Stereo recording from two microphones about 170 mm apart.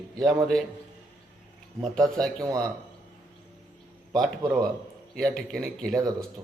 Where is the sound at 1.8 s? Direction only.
Centre (ahead or behind).